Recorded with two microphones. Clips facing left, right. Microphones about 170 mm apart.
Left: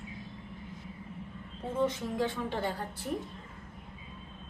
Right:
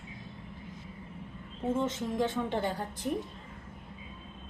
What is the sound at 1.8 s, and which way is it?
A woman's voice, 20° right (ahead or behind).